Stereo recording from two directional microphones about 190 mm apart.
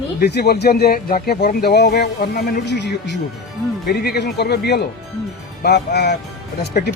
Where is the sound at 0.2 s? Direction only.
60° left (ahead or behind).